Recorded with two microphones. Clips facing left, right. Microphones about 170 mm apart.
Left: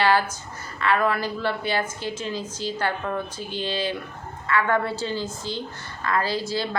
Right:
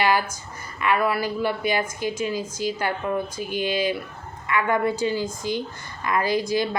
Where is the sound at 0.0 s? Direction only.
15° right (ahead or behind).